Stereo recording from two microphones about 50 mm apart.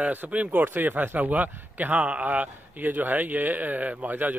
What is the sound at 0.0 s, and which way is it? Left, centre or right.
Speech, right.